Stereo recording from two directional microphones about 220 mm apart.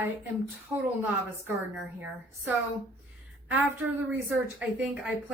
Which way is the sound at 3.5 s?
10° right (ahead or behind).